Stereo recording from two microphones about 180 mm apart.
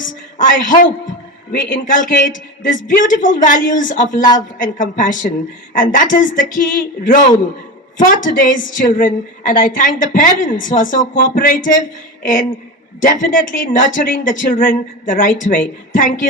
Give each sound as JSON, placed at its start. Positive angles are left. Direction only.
{"t": 0.0, "sound": "a man's voice", "side_deg": 45}